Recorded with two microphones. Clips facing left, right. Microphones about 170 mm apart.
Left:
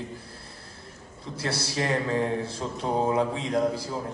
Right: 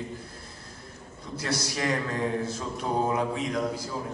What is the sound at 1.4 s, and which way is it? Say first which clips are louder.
Speech: left 1 dB; 30° left (ahead or behind).